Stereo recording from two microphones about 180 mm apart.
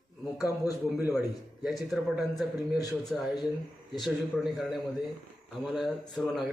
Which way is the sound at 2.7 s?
20° left (ahead or behind).